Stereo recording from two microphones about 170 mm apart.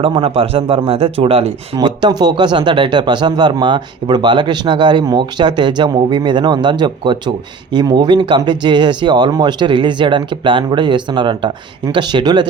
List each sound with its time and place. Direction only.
0.0 s a man's voice: 35° right (ahead or behind)